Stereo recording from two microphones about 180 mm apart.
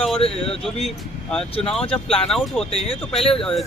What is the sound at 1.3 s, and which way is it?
A man's voice, 5° left (ahead or behind).